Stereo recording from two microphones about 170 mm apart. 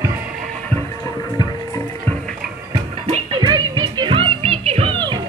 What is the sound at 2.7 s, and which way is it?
Music, 30° right (ahead or behind).